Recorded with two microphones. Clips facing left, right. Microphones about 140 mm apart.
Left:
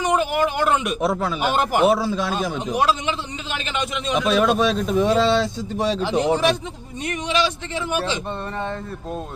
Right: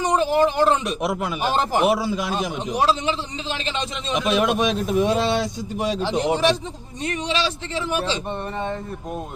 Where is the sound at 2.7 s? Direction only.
35° right (ahead or behind).